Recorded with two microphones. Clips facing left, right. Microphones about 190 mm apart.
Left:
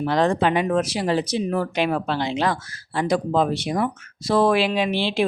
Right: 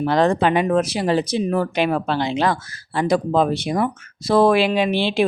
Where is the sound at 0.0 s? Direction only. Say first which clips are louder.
Right 2 dB; 60° right (ahead or behind).